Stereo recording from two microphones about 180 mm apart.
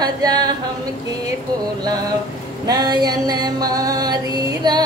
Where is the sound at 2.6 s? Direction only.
25° right (ahead or behind).